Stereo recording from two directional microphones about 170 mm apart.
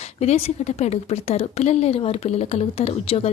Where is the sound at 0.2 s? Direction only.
40° left (ahead or behind).